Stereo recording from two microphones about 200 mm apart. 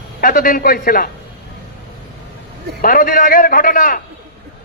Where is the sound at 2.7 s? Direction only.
45° left (ahead or behind).